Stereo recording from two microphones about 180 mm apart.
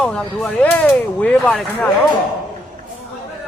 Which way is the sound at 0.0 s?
5° left (ahead or behind).